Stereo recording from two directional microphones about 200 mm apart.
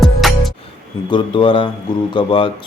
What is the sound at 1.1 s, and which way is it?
Speech, 25° left (ahead or behind).